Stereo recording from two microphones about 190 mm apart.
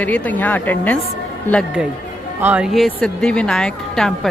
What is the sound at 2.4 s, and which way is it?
Speech, 5° right (ahead or behind).